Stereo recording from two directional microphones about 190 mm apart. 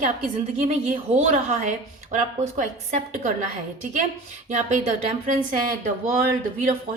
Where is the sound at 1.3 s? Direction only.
40° right (ahead or behind).